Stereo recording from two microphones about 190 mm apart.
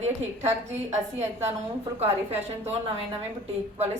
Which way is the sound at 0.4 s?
35° right (ahead or behind).